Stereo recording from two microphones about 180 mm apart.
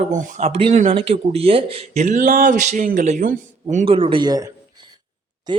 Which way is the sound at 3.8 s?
30° right (ahead or behind).